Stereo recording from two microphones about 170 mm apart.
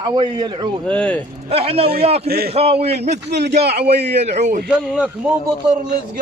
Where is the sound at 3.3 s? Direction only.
75° right (ahead or behind).